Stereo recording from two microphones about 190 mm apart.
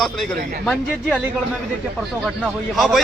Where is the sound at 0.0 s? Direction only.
Centre (ahead or behind).